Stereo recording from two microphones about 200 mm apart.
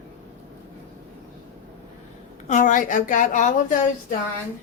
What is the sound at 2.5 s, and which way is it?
A woman's voice, 40° left (ahead or behind).